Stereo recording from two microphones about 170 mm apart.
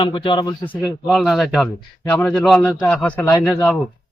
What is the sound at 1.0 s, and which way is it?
A man's voice, centre (ahead or behind).